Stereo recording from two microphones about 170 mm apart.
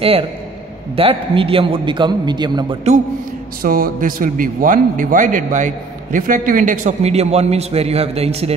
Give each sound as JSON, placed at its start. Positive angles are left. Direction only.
{"t": 0.9, "sound": "a man's voice", "side_deg": -35}
{"t": 3.6, "sound": "a man's voice", "side_deg": -55}